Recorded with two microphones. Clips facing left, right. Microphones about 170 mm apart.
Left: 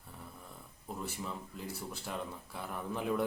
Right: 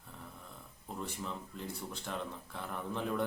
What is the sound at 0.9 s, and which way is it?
A man's voice, 5° left (ahead or behind).